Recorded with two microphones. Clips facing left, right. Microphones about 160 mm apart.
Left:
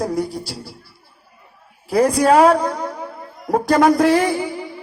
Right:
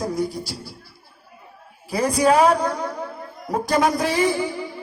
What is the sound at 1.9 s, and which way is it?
Speech, 60° left (ahead or behind).